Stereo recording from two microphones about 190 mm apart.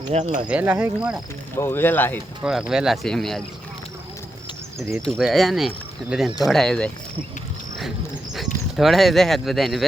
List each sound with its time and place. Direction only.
0.1 s speech: 35° right (ahead or behind)
0.4 s speech: 5° right (ahead or behind)
1.5 s speech: 15° left (ahead or behind)
2.4 s speech: 5° right (ahead or behind)
5.1 s speech: centre (ahead or behind)
8.7 s speech: centre (ahead or behind)